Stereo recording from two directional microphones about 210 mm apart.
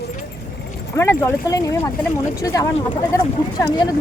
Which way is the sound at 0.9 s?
15° left (ahead or behind).